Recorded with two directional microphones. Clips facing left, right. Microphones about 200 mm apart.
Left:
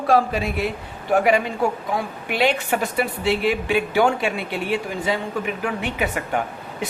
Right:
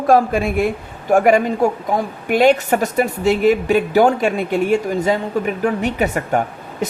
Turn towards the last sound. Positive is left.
turn(degrees=-45)  # may be behind; listen again after turning